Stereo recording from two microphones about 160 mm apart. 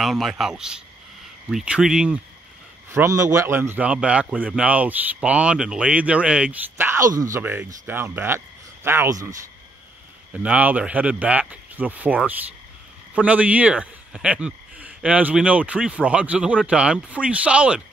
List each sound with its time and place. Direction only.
0.0 s a man's voice: centre (ahead or behind)
2.9 s a man's voice: 20° right (ahead or behind)
10.3 s a man's voice: 10° right (ahead or behind)